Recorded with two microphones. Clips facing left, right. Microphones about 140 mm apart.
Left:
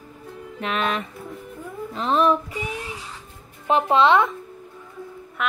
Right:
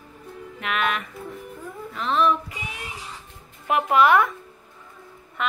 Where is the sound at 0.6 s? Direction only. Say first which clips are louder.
Left 1 dB; 30° left (ahead or behind).